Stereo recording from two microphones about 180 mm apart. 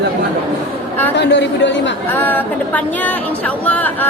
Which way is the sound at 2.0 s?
10° left (ahead or behind).